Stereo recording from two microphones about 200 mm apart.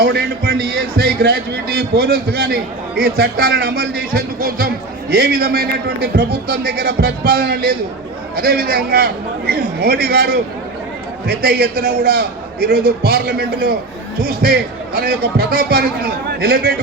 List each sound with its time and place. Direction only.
0.0 s a man's voice: 50° right (ahead or behind)